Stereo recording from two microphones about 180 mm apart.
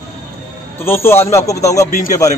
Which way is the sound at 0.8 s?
15° left (ahead or behind).